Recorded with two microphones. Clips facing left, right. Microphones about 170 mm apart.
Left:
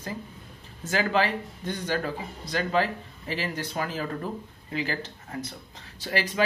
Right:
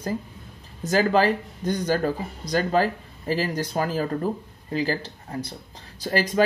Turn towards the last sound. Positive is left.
turn(degrees=-40)  # may be behind; listen again after turning